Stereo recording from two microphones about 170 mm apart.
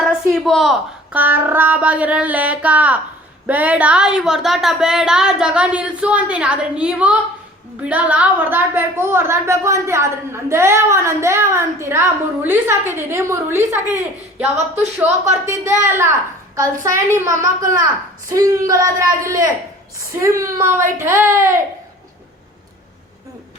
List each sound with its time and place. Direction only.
0.0 s a woman's voice: centre (ahead or behind); by 21.6 s 15° right (ahead or behind)